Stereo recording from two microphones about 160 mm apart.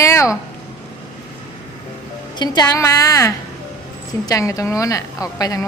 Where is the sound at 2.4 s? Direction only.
25° left (ahead or behind).